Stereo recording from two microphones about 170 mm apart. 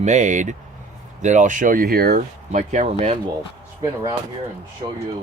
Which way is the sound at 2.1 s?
45° right (ahead or behind).